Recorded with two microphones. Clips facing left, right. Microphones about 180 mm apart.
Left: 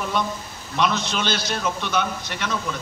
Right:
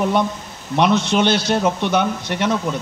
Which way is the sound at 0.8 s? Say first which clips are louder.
Right 7 dB; 70° right (ahead or behind).